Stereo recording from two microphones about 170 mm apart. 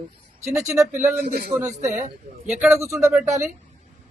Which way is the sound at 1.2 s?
70° right (ahead or behind).